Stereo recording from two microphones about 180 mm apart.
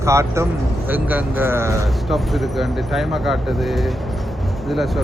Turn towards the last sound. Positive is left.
turn(degrees=0)  # may be behind; listen again after turning